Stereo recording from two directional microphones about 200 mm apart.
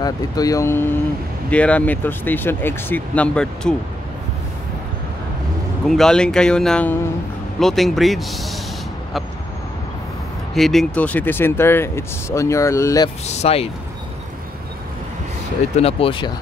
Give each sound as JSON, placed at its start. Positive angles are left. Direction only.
{"t": 0.0, "sound": "speech", "side_deg": 15}
{"t": 5.9, "sound": "a man's voice", "side_deg": 0}
{"t": 10.5, "sound": "speech", "side_deg": 0}
{"t": 13.3, "sound": "speech", "side_deg": 30}
{"t": 15.7, "sound": "speech", "side_deg": 30}